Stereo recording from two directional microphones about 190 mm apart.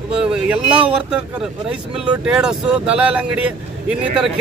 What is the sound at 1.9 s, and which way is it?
Speech, 5° right (ahead or behind).